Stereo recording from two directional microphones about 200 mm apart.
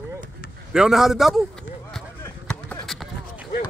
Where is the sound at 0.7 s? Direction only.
Centre (ahead or behind).